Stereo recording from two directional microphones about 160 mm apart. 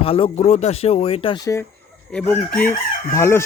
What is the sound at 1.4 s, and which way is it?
Speech, 20° left (ahead or behind).